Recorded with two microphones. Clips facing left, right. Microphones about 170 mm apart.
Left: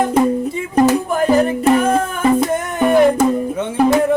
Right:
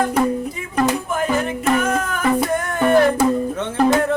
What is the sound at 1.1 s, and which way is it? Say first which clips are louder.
Music: left 6 dB; 35° left (ahead or behind).